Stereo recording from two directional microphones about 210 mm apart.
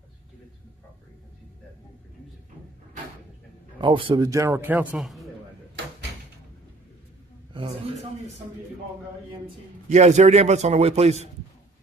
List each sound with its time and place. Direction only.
3.8 s a man's voice: 25° right (ahead or behind); by 5.3 s centre (ahead or behind)
7.5 s a sound: 25° right (ahead or behind)
9.8 s a man's voice: 35° right (ahead or behind)